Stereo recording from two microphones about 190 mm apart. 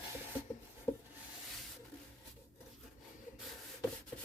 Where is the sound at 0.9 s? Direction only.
15° left (ahead or behind).